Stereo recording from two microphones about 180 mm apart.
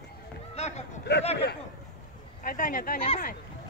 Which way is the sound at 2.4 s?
50° left (ahead or behind).